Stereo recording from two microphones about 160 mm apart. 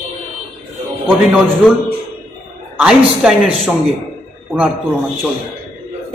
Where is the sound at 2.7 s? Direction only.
5° right (ahead or behind).